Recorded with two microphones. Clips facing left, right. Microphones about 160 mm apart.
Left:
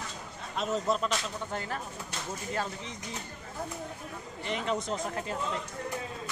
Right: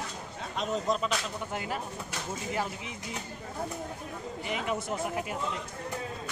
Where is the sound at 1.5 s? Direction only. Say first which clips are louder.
Right 1 dB; 15° right (ahead or behind).